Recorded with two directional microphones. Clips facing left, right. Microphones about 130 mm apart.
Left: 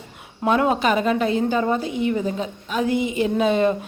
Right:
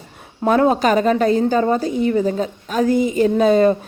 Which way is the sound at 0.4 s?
35° right (ahead or behind).